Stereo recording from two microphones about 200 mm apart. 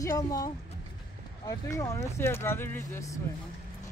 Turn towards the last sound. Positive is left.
turn(degrees=15)  # may be behind; listen again after turning